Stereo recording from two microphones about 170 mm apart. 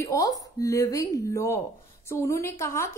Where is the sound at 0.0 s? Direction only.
20° left (ahead or behind).